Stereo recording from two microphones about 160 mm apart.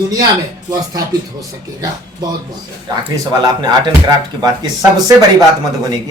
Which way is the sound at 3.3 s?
25° right (ahead or behind).